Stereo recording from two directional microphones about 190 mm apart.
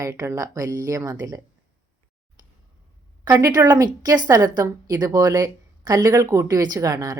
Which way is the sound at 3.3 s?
20° right (ahead or behind).